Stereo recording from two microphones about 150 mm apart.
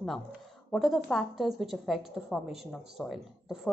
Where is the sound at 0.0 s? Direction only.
Centre (ahead or behind).